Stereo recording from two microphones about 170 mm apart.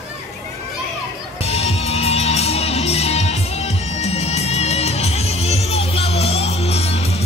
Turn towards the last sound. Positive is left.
turn(degrees=35)  # may be behind; listen again after turning